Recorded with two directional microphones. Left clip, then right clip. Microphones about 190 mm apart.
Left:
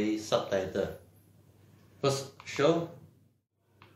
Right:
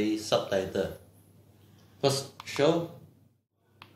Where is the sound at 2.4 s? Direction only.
20° right (ahead or behind).